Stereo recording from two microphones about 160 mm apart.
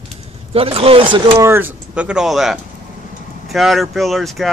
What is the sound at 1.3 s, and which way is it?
Speech, 15° right (ahead or behind).